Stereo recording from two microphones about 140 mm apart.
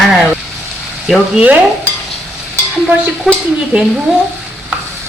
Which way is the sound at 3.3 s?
Centre (ahead or behind).